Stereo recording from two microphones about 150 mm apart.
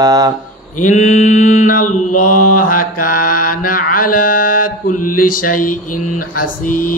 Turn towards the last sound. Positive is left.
turn(degrees=65)  # may be behind; listen again after turning